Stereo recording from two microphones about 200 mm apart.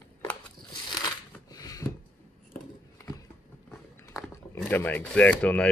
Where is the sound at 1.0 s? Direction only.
20° left (ahead or behind).